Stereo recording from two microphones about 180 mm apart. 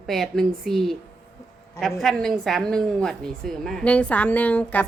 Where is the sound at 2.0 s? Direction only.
Centre (ahead or behind).